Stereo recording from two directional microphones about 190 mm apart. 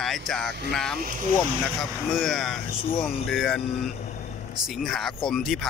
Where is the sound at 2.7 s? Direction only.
30° left (ahead or behind).